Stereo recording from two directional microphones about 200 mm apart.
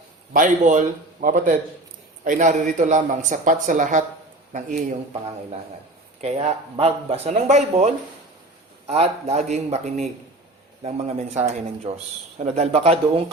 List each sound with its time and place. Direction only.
0.3 s a man's voice: 40° right (ahead or behind)
6.2 s a man's voice: 30° right (ahead or behind)
8.9 s a man's voice: 30° right (ahead or behind)